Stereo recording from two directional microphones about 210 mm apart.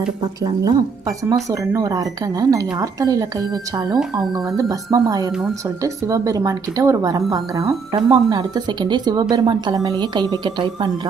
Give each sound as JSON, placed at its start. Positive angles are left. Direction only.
{"t": 0.4, "sound": "speech", "side_deg": -20}